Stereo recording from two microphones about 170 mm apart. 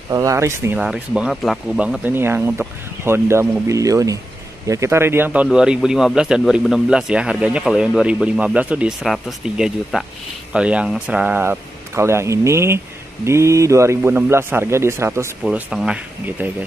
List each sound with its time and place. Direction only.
0.1 s a man's voice: 20° right (ahead or behind)
15.4 s a man's voice: 5° right (ahead or behind)